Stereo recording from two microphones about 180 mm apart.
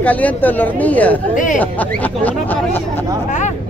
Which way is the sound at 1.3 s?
45° left (ahead or behind).